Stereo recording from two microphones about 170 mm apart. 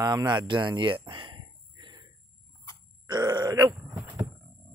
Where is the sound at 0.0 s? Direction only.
20° right (ahead or behind).